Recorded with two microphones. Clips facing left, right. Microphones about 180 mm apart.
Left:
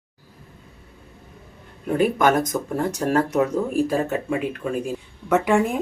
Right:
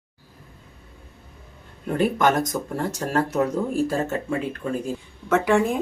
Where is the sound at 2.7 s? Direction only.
15° left (ahead or behind).